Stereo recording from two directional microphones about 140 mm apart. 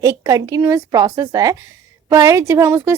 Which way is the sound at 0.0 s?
25° right (ahead or behind).